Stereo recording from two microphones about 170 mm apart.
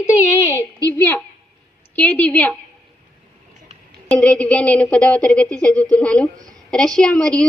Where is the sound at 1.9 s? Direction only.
10° left (ahead or behind).